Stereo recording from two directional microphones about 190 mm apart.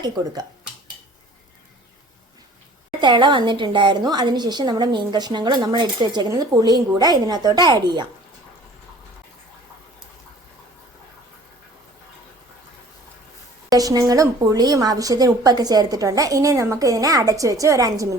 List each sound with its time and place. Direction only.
0.2 s speech: 20° right (ahead or behind)
3.0 s a woman's voice: 25° right (ahead or behind)
13.7 s a woman's voice: 20° right (ahead or behind)